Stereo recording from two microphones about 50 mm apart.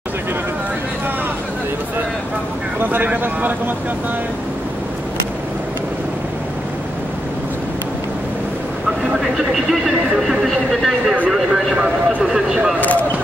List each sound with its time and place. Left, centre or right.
2.8 s speech: right
9.5 s a sound: centre
12.2 s vehicle: centre